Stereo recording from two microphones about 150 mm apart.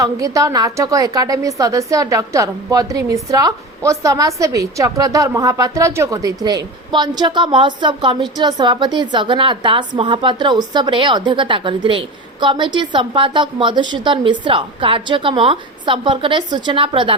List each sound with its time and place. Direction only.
0.0 s a woman's voice: 20° right (ahead or behind)